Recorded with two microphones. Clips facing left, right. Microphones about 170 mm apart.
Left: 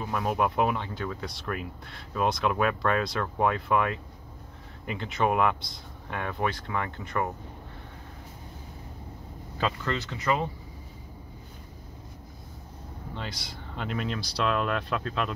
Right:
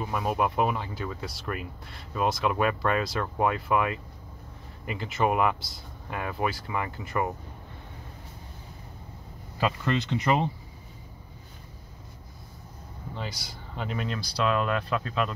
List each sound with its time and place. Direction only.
0.0 s speech: 5° right (ahead or behind)
9.8 s speech: 20° right (ahead or behind)
13.1 s speech: 5° right (ahead or behind)